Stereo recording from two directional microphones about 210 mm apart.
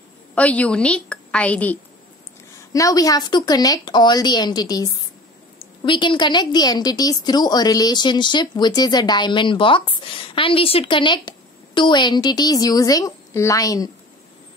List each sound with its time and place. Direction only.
0.3 s a woman's voice: 5° left (ahead or behind)